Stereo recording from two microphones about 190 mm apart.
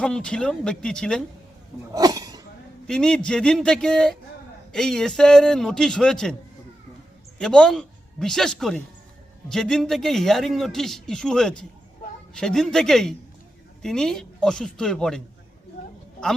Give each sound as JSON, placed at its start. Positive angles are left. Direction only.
{"t": 0.0, "sound": "a man's voice", "side_deg": 5}
{"t": 1.9, "sound": "a sound", "side_deg": -20}
{"t": 2.8, "sound": "a man's voice", "side_deg": 5}
{"t": 7.3, "sound": "a man's voice", "side_deg": 5}